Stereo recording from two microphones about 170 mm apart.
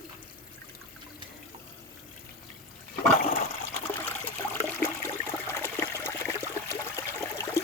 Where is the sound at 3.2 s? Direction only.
60° left (ahead or behind).